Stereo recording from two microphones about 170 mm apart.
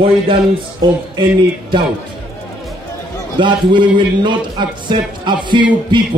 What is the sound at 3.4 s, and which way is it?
A man's voice, 30° right (ahead or behind).